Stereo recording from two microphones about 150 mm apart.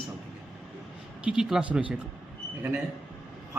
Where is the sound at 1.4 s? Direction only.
5° right (ahead or behind).